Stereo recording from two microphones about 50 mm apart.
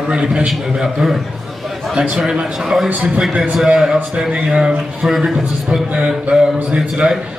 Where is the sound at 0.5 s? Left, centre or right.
Centre.